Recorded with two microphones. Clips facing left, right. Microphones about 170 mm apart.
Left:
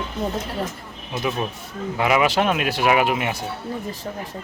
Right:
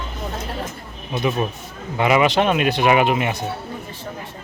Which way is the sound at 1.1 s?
Centre (ahead or behind).